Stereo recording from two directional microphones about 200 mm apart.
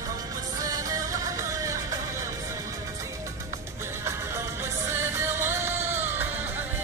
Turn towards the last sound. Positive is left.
turn(degrees=-10)  # may be behind; listen again after turning